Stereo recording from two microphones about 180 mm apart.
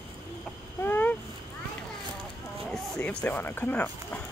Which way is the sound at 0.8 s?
10° left (ahead or behind).